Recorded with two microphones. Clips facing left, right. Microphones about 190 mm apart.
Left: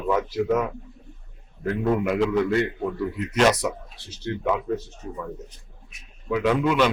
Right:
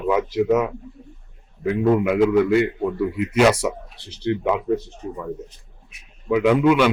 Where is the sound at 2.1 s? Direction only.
5° right (ahead or behind).